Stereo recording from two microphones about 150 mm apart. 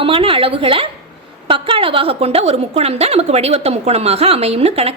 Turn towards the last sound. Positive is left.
turn(degrees=-40)  # may be behind; listen again after turning